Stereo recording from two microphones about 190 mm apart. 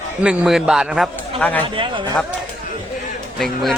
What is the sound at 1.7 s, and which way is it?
Speech, 25° right (ahead or behind).